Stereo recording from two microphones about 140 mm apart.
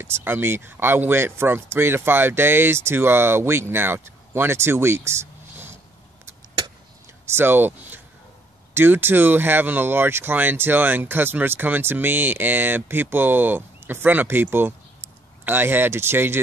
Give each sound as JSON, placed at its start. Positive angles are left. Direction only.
{"t": 0.0, "sound": "speech", "side_deg": -15}
{"t": 7.2, "sound": "speech", "side_deg": -15}